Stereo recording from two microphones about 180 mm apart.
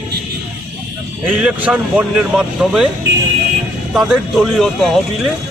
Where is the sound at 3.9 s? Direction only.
5° right (ahead or behind).